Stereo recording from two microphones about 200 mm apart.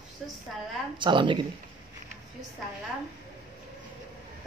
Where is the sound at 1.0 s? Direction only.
25° right (ahead or behind).